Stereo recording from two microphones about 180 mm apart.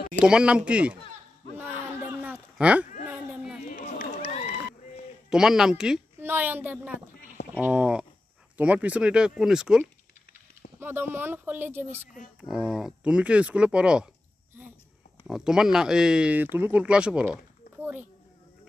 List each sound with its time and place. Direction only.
0.2 s speech: 5° right (ahead or behind)
2.5 s speech: 5° right (ahead or behind)
3.1 s a sound: 5° right (ahead or behind)
3.6 s run: 45° left (ahead or behind)
5.3 s speech: 5° right (ahead or behind)
15.2 s speech: 5° right (ahead or behind)